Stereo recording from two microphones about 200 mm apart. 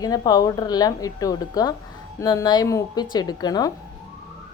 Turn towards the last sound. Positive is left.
turn(degrees=20)  # may be behind; listen again after turning